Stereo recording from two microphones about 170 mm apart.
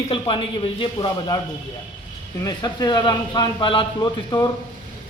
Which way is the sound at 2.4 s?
25° left (ahead or behind).